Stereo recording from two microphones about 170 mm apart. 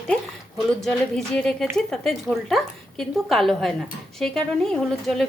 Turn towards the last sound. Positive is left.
turn(degrees=0)  # may be behind; listen again after turning